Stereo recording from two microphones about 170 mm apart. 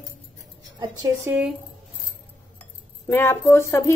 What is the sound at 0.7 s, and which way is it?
Speech, 20° right (ahead or behind).